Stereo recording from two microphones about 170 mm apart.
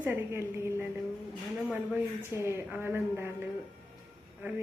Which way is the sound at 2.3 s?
15° right (ahead or behind).